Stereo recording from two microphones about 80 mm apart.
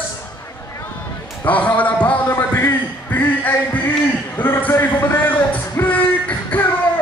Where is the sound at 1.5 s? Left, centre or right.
Centre.